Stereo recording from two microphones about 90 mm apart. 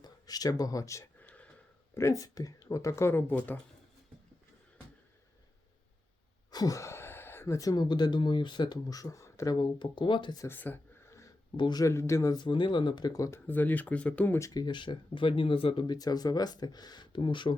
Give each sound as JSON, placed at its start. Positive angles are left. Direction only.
{"t": 0.0, "sound": "speech", "side_deg": 45}
{"t": 1.2, "sound": "a sound", "side_deg": 15}
{"t": 2.0, "sound": "speech", "side_deg": 35}
{"t": 6.5, "sound": "speech", "side_deg": 45}
{"t": 8.9, "sound": "speech", "side_deg": 40}
{"t": 9.5, "sound": "speech", "side_deg": 60}
{"t": 10.5, "sound": "speech", "side_deg": 20}
{"t": 11.5, "sound": "speech", "side_deg": 65}
{"t": 11.8, "sound": "speech", "side_deg": 35}
{"t": 12.4, "sound": "speech", "side_deg": 65}
{"t": 13.1, "sound": "speech", "side_deg": 40}
{"t": 13.5, "sound": "speech", "side_deg": 20}
{"t": 14.5, "sound": "speech", "side_deg": 55}
{"t": 15.9, "sound": "speech", "side_deg": 45}